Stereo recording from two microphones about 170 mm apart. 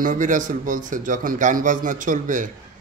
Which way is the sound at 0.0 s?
50° right (ahead or behind).